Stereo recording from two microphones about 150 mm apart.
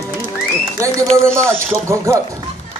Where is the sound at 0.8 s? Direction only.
15° right (ahead or behind).